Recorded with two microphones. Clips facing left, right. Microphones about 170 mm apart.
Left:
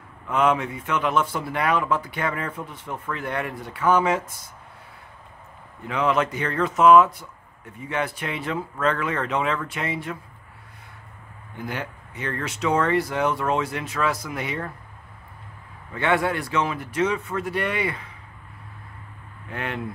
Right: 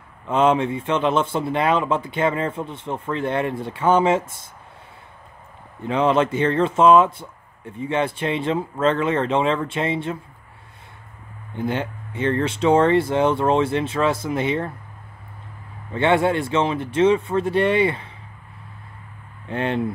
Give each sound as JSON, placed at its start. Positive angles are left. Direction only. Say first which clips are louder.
{"t": 0.3, "sound": "speech", "louder": "right 4 dB", "side_deg": -25}
{"t": 5.9, "sound": "speech", "louder": "right 4 dB", "side_deg": -30}
{"t": 11.5, "sound": "speech", "louder": "right 7 dB", "side_deg": -25}
{"t": 15.9, "sound": "speech", "louder": "right 5 dB", "side_deg": -25}
{"t": 19.5, "sound": "speech", "louder": "right 7 dB", "side_deg": -30}